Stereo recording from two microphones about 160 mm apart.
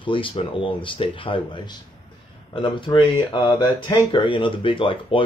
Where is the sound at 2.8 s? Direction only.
30° left (ahead or behind).